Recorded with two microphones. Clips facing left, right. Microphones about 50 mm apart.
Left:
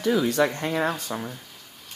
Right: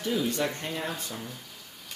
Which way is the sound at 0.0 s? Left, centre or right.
Left.